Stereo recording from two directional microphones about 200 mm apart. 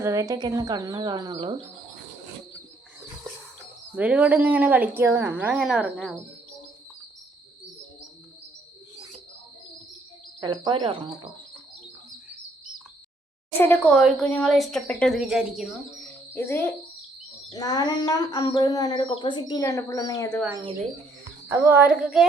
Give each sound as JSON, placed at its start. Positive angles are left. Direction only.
{"t": 0.0, "sound": "speech", "side_deg": -15}
{"t": 3.9, "sound": "speech", "side_deg": -5}
{"t": 10.4, "sound": "speech", "side_deg": -20}
{"t": 13.6, "sound": "speech", "side_deg": 5}
{"t": 16.3, "sound": "a child's voice", "side_deg": 10}
{"t": 21.5, "sound": "speech", "side_deg": -10}